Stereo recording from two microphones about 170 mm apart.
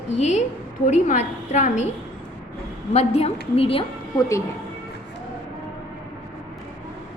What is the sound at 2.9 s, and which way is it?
Speech, 40° left (ahead or behind).